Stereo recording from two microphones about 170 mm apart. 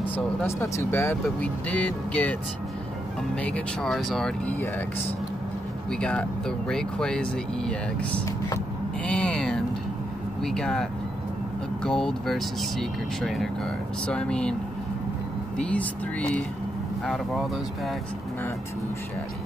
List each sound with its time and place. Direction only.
0.1 s speech: 10° left (ahead or behind)
3.3 s speech: 5° left (ahead or behind)
5.9 s speech: 5° left (ahead or behind)
9.0 s a sound: 5° left (ahead or behind)
10.4 s speech: centre (ahead or behind)
15.5 s speech: 5° left (ahead or behind)